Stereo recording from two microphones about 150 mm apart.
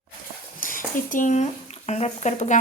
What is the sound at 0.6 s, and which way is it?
Speech, 65° left (ahead or behind).